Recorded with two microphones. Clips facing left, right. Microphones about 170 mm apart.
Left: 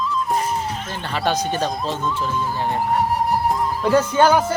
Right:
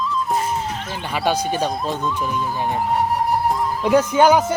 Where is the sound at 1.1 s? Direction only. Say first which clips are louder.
Right 1 dB; 10° right (ahead or behind).